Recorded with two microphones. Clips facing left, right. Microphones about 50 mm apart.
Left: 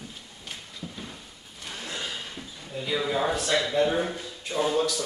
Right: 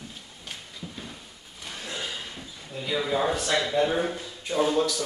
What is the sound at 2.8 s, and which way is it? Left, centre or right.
Speech, centre.